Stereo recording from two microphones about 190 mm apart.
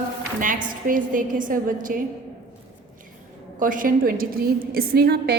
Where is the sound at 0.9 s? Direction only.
45° right (ahead or behind).